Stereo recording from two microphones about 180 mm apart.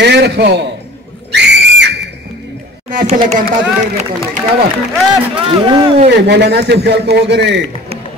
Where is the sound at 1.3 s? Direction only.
75° right (ahead or behind).